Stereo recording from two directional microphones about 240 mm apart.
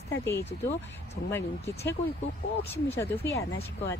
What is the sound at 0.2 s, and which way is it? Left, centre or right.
Speech, centre.